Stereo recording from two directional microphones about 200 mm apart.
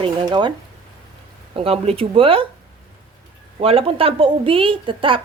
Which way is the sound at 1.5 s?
30° right (ahead or behind).